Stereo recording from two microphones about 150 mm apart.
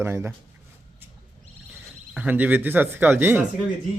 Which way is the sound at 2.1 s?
10° right (ahead or behind).